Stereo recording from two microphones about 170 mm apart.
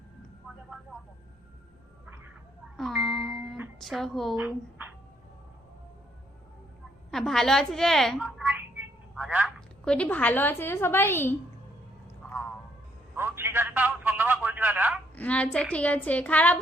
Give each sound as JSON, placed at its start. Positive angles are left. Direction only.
{"t": 2.7, "sound": "music", "side_deg": 0}
{"t": 3.8, "sound": "a woman's voice", "side_deg": 0}
{"t": 4.4, "sound": "speech", "side_deg": -10}
{"t": 7.1, "sound": "a woman's voice", "side_deg": 0}
{"t": 12.2, "sound": "a sound", "side_deg": 5}
{"t": 13.1, "sound": "a sound", "side_deg": -15}
{"t": 15.1, "sound": "a woman's voice", "side_deg": 10}